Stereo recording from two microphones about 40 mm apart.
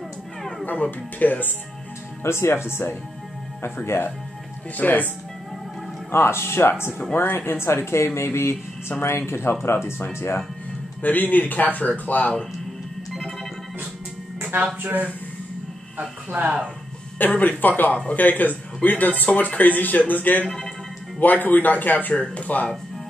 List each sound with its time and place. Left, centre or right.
0.7 s speech: left
2.3 s speech: left
4.7 s speech: left
6.1 s speech: left
7.2 s speech: left
9.5 s speech: left
11.0 s speech: left
14.8 s speech: right
16.3 s speech: right
17.3 s speech: left
20.4 s speech: centre
21.2 s speech: left
22.1 s speech: left